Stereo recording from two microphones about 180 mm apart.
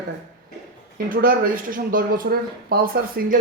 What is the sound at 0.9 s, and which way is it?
Speech, 55° right (ahead or behind).